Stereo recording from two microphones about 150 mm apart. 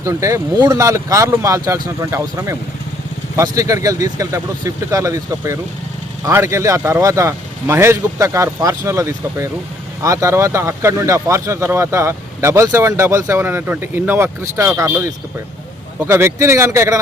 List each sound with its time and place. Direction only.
0.0 s speech: 20° right (ahead or behind)
16.0 s speech: 15° right (ahead or behind)